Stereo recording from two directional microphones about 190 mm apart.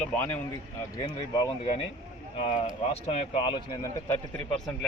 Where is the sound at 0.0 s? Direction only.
10° left (ahead or behind).